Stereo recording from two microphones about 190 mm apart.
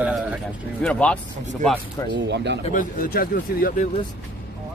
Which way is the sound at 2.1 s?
65° right (ahead or behind).